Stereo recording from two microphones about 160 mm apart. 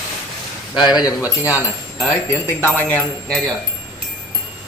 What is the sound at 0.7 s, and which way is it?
Speech, 25° left (ahead or behind).